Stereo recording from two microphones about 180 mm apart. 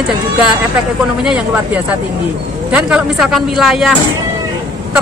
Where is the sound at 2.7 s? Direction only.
5° right (ahead or behind).